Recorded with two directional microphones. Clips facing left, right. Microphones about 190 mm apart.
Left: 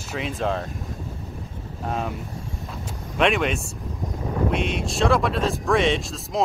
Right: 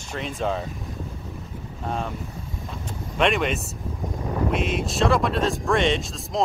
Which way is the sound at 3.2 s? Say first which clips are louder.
Left 1 dB; centre (ahead or behind).